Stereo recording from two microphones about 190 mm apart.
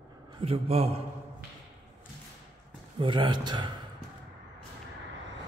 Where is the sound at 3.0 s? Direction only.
25° right (ahead or behind).